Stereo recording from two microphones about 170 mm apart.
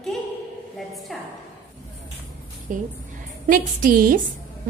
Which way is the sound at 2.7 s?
50° right (ahead or behind).